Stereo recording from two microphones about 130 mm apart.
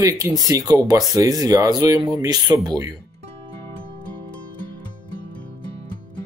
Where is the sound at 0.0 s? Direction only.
25° right (ahead or behind).